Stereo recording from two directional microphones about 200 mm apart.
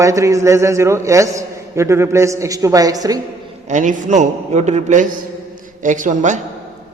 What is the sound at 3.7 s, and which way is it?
A man's voice, 40° right (ahead or behind).